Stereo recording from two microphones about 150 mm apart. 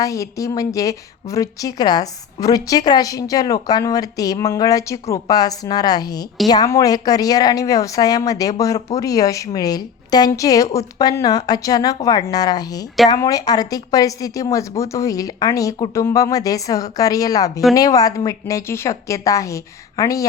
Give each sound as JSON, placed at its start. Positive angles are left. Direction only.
{"t": 0.0, "sound": "a woman's voice", "side_deg": 20}